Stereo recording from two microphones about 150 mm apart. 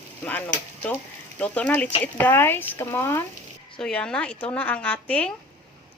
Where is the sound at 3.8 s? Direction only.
5° left (ahead or behind).